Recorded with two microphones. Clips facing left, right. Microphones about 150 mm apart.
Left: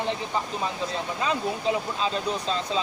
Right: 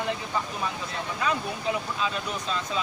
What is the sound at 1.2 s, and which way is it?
Speech, 25° left (ahead or behind).